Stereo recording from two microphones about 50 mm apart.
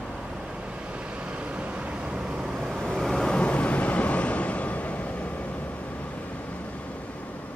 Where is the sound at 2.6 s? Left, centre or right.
Centre; by 5.1 s left.